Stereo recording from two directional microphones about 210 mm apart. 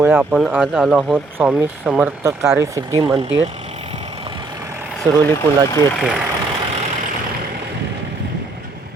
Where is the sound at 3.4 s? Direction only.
30° right (ahead or behind); by 4.9 s 15° right (ahead or behind).